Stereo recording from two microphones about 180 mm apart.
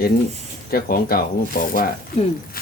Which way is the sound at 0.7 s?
55° left (ahead or behind).